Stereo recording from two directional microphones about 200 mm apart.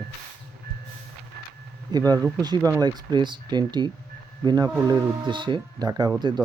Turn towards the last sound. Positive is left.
turn(degrees=-20)  # may be behind; listen again after turning